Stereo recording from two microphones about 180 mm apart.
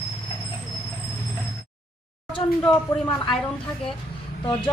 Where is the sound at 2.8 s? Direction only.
25° left (ahead or behind).